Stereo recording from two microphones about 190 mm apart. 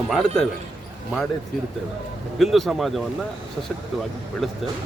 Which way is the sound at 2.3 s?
Centre (ahead or behind).